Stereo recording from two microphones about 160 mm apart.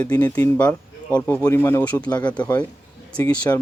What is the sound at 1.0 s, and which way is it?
Speech, 10° left (ahead or behind).